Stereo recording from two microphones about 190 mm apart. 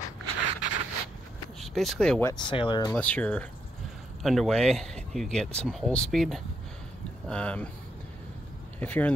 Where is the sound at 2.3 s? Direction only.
25° left (ahead or behind).